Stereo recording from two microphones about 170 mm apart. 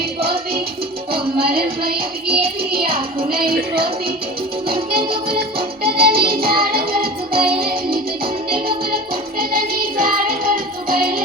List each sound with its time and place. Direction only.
1.1 s music: 65° right (ahead or behind)
4.9 s music: 65° right (ahead or behind)